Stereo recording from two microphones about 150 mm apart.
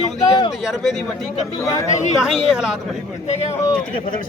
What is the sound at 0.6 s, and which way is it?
Speech, centre (ahead or behind).